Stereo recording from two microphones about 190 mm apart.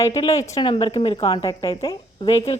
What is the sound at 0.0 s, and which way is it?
A woman's voice, 15° left (ahead or behind).